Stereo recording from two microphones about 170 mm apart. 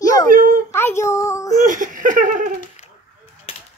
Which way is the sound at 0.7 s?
15° left (ahead or behind).